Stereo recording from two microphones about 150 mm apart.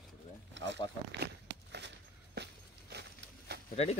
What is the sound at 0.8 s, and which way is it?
Speech, 35° left (ahead or behind).